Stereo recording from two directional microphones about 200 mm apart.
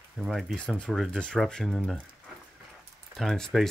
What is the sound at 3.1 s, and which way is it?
Speech, centre (ahead or behind).